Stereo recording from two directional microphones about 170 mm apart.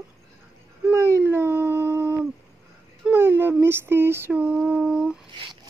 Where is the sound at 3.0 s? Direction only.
15° right (ahead or behind).